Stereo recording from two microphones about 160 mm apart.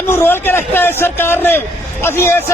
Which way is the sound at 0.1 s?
15° left (ahead or behind).